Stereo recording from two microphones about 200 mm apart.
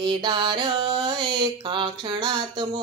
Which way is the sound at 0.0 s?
25° right (ahead or behind).